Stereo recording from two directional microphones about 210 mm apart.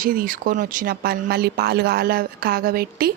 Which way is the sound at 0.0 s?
40° right (ahead or behind).